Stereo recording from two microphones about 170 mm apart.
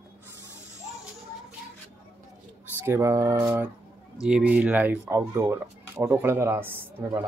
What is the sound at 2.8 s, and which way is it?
Speech, 15° right (ahead or behind).